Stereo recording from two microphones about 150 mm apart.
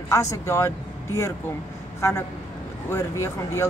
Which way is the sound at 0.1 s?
20° left (ahead or behind).